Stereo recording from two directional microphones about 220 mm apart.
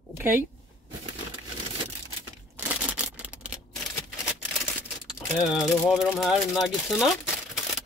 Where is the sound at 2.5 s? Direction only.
5° right (ahead or behind).